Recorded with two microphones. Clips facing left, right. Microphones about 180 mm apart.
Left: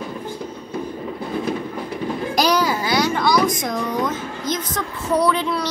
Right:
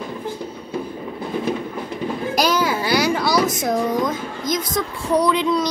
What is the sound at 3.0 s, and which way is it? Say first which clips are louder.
A woman's voice: left 2 dB; 10° right (ahead or behind).